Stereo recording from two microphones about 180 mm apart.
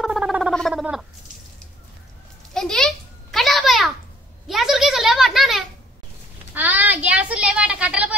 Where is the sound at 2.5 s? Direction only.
Centre (ahead or behind).